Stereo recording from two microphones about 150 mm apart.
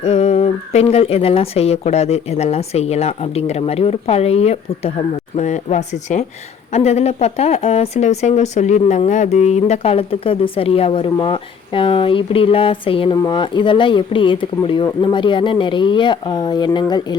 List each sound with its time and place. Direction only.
0.0 s speech: 45° left (ahead or behind); by 17.2 s 30° left (ahead or behind)